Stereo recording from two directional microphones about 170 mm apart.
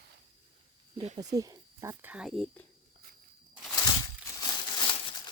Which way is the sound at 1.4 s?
20° right (ahead or behind).